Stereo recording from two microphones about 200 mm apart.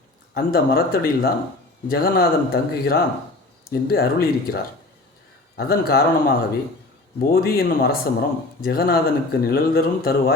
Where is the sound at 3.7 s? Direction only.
50° left (ahead or behind).